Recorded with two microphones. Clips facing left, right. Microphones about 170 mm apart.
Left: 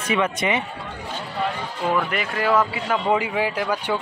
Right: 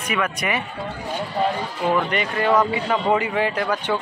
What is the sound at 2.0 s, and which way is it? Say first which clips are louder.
A man's voice: right 2 dB; 5° left (ahead or behind).